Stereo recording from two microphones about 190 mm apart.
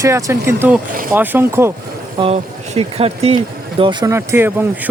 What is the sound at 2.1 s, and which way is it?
Speech, 30° right (ahead or behind).